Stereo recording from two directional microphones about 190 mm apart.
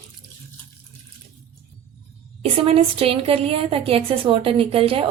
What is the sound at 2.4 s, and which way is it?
A woman's voice, 30° right (ahead or behind).